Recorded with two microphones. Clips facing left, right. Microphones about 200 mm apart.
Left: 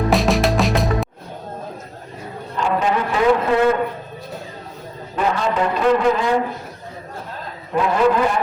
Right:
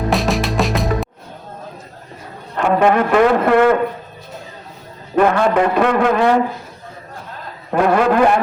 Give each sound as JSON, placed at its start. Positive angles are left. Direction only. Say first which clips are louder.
{"t": 0.1, "sound": "music", "louder": "left 1 dB", "side_deg": 0}
{"t": 2.6, "sound": "a man's voice", "louder": "right 6 dB", "side_deg": -60}
{"t": 5.1, "sound": "a man's voice", "louder": "right 6 dB", "side_deg": -60}
{"t": 7.7, "sound": "a man's voice", "louder": "right 2 dB", "side_deg": -60}